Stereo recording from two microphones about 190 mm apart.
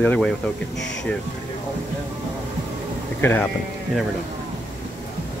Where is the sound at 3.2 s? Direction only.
10° left (ahead or behind).